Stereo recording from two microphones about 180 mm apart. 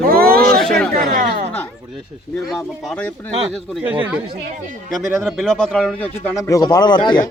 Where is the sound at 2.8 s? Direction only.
5° left (ahead or behind).